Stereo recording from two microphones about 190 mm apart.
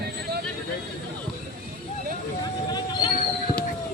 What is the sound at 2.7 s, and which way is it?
Hubbub, 20° left (ahead or behind).